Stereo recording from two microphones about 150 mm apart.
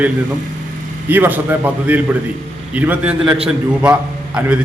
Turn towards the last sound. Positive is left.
turn(degrees=-5)  # may be behind; listen again after turning